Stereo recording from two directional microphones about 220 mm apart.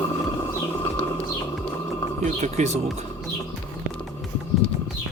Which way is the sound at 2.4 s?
30° right (ahead or behind).